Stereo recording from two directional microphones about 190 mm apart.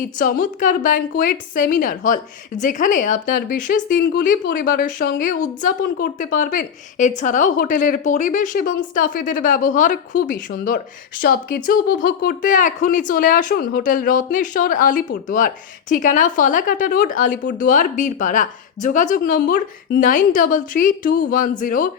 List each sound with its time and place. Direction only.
0.2 s a woman's voice: 45° left (ahead or behind)